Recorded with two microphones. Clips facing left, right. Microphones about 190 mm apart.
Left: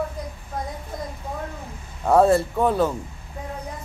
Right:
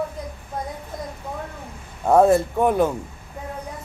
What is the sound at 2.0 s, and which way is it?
Speech, 10° right (ahead or behind).